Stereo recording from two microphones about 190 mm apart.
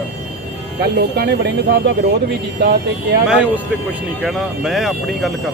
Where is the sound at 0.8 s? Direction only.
60° right (ahead or behind).